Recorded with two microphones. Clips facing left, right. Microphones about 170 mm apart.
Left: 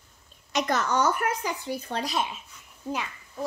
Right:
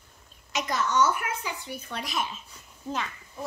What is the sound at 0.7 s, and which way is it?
A woman's voice, 45° left (ahead or behind).